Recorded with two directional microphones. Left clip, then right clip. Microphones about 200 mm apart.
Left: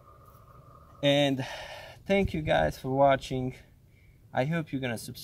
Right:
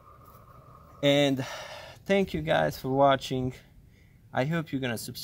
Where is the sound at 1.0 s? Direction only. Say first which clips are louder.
Right 1 dB; 20° right (ahead or behind).